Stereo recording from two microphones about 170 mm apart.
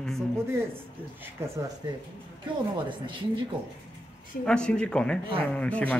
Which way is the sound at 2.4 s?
30° right (ahead or behind).